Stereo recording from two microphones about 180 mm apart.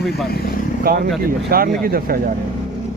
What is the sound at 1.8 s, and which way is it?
Speech, 55° right (ahead or behind).